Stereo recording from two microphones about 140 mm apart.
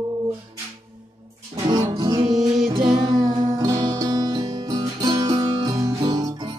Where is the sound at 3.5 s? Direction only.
30° right (ahead or behind).